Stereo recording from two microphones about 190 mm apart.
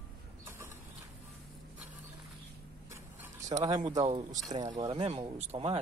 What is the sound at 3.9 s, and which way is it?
Speech, 25° right (ahead or behind).